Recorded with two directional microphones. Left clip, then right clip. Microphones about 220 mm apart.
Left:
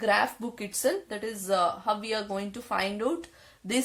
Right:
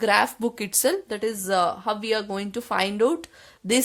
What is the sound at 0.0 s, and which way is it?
A woman's voice, 50° right (ahead or behind).